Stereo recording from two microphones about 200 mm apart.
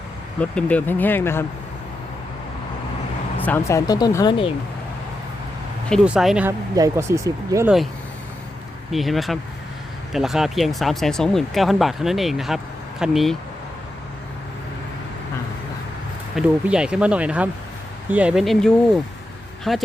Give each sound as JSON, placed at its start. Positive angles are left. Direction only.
{"t": 0.3, "sound": "speech", "side_deg": 5}
{"t": 3.3, "sound": "speech", "side_deg": 10}
{"t": 5.9, "sound": "speech", "side_deg": 0}
{"t": 6.7, "sound": "speech", "side_deg": -15}
{"t": 8.9, "sound": "speech", "side_deg": 0}
{"t": 16.3, "sound": "speech", "side_deg": -5}